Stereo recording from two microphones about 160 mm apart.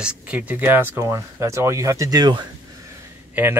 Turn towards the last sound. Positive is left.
turn(degrees=-10)  # may be behind; listen again after turning